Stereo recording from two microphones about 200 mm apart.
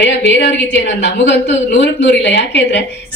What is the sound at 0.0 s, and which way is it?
A woman's voice, 60° left (ahead or behind).